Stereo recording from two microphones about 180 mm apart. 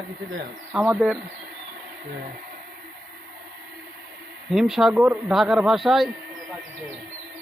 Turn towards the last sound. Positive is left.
turn(degrees=0)  # may be behind; listen again after turning